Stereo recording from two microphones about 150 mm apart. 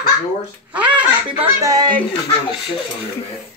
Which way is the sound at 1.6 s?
25° right (ahead or behind).